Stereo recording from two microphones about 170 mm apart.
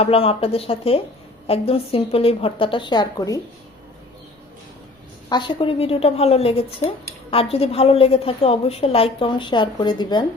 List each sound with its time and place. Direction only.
0.0 s speech: 35° left (ahead or behind)
5.3 s speech: 30° left (ahead or behind)